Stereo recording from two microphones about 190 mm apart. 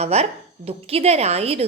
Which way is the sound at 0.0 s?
35° right (ahead or behind).